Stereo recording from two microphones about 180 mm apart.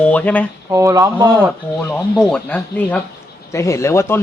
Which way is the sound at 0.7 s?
15° right (ahead or behind).